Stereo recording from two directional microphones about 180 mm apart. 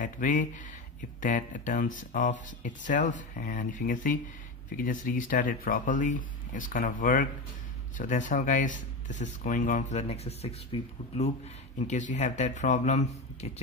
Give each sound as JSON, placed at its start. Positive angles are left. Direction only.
{"t": 0.0, "sound": "speech", "side_deg": 45}